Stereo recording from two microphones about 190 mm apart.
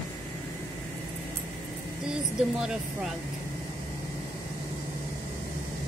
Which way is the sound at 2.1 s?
5° right (ahead or behind).